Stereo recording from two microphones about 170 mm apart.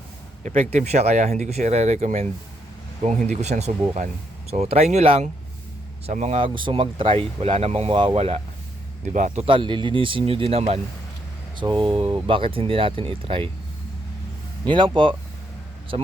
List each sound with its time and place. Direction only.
0.4 s speech: 45° right (ahead or behind); by 13.5 s 30° right (ahead or behind)
14.6 s speech: 30° right (ahead or behind)